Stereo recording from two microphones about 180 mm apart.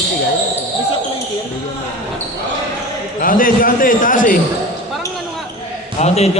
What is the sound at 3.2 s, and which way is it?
A man's voice, 50° left (ahead or behind).